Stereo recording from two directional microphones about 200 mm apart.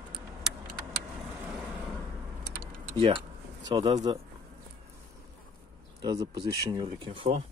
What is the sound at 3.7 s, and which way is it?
Speech, 25° right (ahead or behind).